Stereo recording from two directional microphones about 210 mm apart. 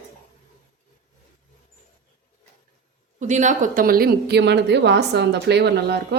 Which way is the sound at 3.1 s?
35° right (ahead or behind).